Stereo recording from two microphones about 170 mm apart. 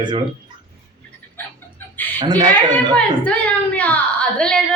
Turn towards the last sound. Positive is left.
turn(degrees=5)  # may be behind; listen again after turning